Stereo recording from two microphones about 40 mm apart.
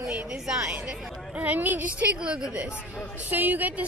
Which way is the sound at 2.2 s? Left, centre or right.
Right.